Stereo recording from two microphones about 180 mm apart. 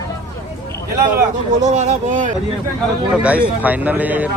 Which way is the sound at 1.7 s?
40° right (ahead or behind).